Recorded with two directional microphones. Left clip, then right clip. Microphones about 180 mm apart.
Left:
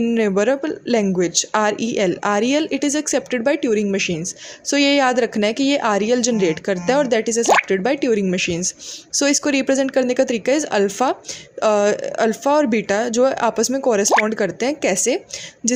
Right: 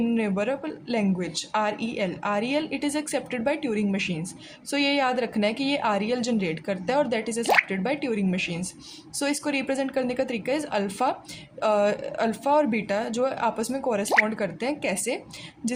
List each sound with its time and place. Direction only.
0.1 s speech: 35° left (ahead or behind)